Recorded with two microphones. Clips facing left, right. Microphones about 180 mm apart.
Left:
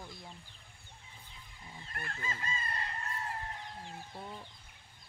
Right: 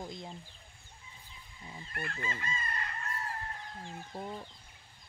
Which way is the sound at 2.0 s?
30° left (ahead or behind).